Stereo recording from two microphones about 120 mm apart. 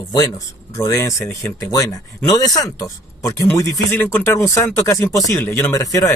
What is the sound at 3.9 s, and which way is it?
Speech, 20° left (ahead or behind).